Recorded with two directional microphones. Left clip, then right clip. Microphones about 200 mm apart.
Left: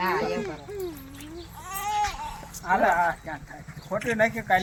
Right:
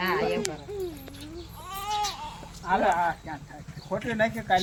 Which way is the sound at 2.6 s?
25° left (ahead or behind).